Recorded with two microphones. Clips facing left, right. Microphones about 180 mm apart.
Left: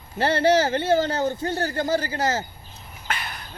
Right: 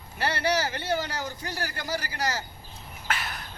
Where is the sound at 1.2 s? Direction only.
25° left (ahead or behind).